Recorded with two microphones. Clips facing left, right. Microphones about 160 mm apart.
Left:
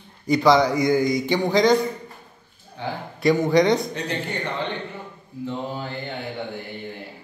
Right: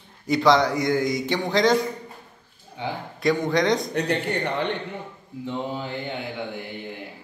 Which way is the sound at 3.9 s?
60° right (ahead or behind).